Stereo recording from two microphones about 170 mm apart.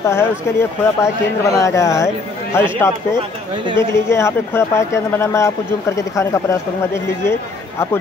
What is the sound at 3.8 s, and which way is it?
Speech, 15° left (ahead or behind).